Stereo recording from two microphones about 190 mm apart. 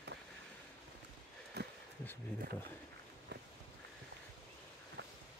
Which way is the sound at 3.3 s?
65° right (ahead or behind).